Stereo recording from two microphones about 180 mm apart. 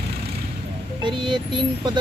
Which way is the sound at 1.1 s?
25° right (ahead or behind).